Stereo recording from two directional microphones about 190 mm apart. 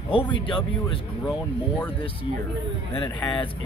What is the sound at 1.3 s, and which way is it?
Speech, 10° left (ahead or behind).